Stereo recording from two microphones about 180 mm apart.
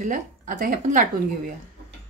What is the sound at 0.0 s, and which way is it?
A woman's voice, 45° right (ahead or behind).